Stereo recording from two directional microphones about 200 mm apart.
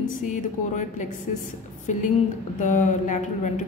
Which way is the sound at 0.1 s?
40° left (ahead or behind).